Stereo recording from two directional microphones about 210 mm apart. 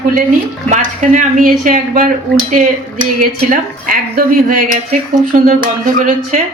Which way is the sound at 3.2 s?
40° right (ahead or behind).